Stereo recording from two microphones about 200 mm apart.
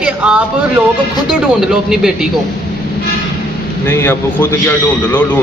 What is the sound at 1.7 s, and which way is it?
Speech, centre (ahead or behind).